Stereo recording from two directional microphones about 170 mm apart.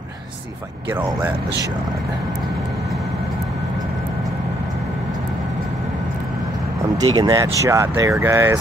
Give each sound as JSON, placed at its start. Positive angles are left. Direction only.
{"t": 7.0, "sound": "speech", "side_deg": -20}